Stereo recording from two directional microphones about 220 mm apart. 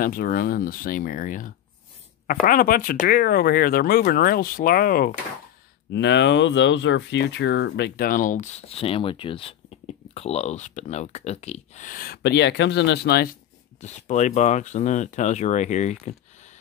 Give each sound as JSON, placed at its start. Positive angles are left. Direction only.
{"t": 0.0, "sound": "speech", "side_deg": 40}
{"t": 5.9, "sound": "speech", "side_deg": 50}
{"t": 13.7, "sound": "speech", "side_deg": 30}